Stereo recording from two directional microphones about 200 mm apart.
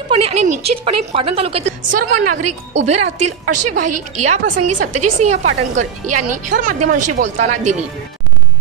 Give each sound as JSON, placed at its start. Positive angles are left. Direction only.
{"t": 0.1, "sound": "a woman's voice", "side_deg": -30}